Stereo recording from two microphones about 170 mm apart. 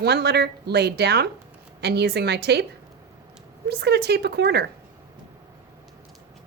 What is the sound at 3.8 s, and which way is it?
Speech, 75° right (ahead or behind).